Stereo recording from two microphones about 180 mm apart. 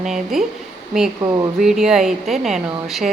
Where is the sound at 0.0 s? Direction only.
Centre (ahead or behind).